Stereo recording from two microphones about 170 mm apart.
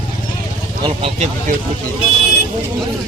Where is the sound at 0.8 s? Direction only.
35° right (ahead or behind).